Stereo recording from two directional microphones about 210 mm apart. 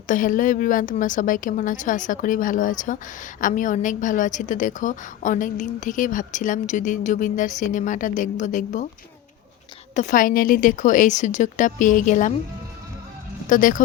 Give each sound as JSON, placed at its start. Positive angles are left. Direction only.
{"t": 0.1, "sound": "a woman's voice", "side_deg": 40}
{"t": 9.9, "sound": "a woman's voice", "side_deg": 35}
{"t": 13.5, "sound": "a woman's voice", "side_deg": 40}